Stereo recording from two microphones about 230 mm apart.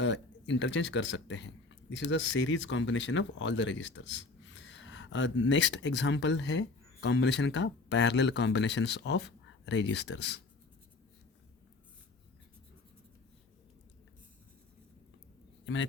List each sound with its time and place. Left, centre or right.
0.0 s speech: left
15.6 s a man's voice: left